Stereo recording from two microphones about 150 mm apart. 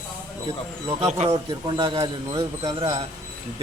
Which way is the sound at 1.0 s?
45° right (ahead or behind).